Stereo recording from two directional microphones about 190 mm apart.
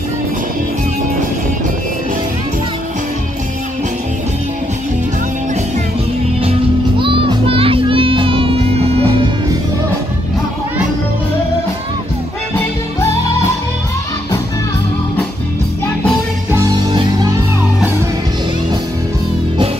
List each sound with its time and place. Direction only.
7.0 s music: 25° right (ahead or behind)